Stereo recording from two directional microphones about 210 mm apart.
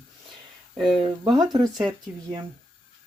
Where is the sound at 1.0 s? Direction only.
20° right (ahead or behind).